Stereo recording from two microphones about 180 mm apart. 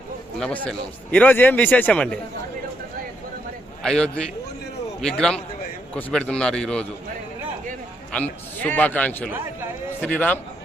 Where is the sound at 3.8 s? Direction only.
5° left (ahead or behind).